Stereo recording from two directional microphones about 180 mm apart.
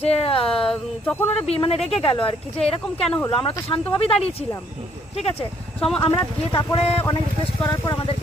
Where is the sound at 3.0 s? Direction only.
10° left (ahead or behind).